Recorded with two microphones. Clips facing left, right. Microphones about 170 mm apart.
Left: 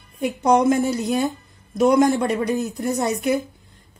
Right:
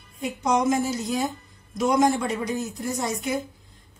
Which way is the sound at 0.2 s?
60° left (ahead or behind).